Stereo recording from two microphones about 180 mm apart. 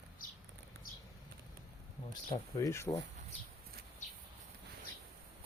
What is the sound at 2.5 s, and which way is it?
Speech, 15° left (ahead or behind).